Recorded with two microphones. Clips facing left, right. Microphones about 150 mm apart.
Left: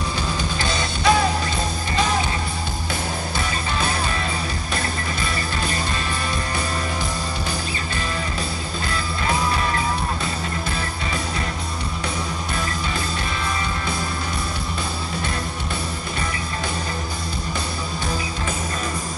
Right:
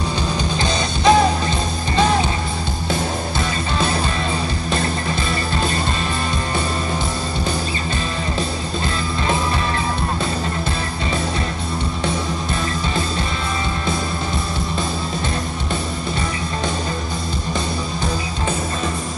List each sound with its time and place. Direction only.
0.6 s music: 20° right (ahead or behind)